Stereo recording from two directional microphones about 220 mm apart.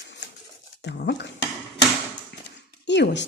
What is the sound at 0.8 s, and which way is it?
Speech, 50° left (ahead or behind).